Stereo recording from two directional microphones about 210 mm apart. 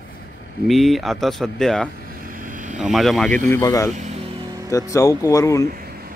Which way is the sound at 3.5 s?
15° left (ahead or behind).